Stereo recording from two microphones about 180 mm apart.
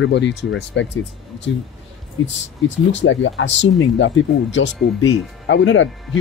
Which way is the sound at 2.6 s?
90° left.